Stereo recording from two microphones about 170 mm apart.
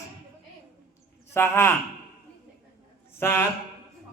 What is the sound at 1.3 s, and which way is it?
Speech, 15° left (ahead or behind).